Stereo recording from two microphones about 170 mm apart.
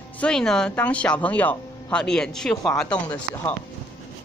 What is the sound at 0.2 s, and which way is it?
Speech, 5° left (ahead or behind).